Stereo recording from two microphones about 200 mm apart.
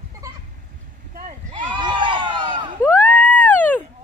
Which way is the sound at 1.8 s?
25° right (ahead or behind).